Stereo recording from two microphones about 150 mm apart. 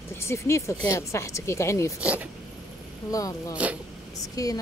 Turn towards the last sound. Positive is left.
turn(degrees=20)  # may be behind; listen again after turning